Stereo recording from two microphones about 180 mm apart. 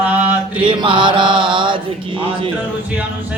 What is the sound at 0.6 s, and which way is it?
Mantra, 25° right (ahead or behind).